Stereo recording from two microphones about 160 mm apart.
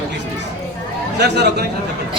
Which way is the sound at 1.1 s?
90° right.